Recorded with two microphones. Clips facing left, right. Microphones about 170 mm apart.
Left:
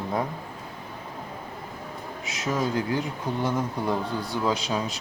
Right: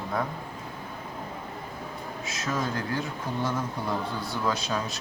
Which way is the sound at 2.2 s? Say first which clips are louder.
Left 3 dB; 15° left (ahead or behind).